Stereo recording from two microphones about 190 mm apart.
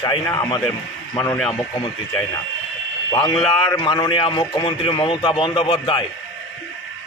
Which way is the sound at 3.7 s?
20° left (ahead or behind).